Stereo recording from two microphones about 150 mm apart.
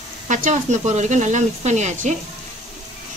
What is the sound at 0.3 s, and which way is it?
Speech, 55° right (ahead or behind).